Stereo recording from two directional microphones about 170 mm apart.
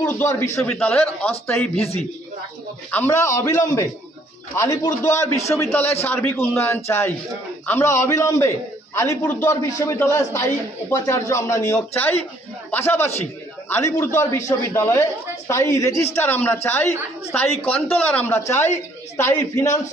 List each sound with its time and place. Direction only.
0.0 s a man's voice: 15° left (ahead or behind)